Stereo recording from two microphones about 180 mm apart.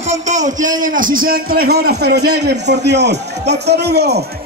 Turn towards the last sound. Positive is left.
turn(degrees=-65)  # may be behind; listen again after turning